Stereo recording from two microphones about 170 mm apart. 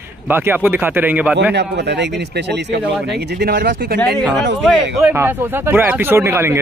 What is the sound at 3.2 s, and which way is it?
Speech, 70° right (ahead or behind).